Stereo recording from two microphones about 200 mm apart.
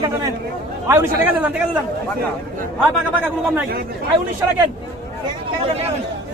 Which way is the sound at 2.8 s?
10° right (ahead or behind).